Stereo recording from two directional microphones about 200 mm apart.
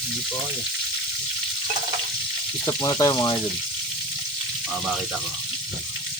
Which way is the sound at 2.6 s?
15° left (ahead or behind).